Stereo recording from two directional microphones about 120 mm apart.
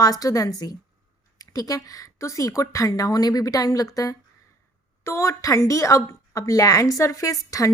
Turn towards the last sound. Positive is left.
turn(degrees=30)  # may be behind; listen again after turning